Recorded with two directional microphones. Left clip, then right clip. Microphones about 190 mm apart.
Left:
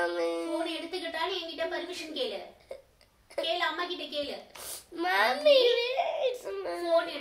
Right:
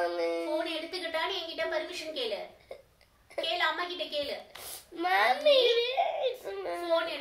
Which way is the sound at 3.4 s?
25° left (ahead or behind).